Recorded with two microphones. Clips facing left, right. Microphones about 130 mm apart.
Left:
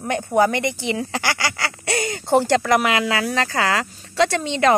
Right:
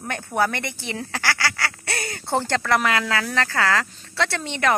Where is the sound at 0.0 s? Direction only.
15° left (ahead or behind).